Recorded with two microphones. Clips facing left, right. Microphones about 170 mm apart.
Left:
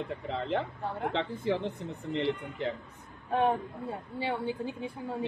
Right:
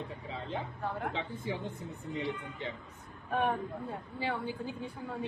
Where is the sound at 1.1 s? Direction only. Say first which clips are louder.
Left 7 dB; 90° left.